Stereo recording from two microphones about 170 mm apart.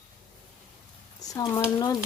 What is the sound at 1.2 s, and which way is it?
Speech, 20° left (ahead or behind).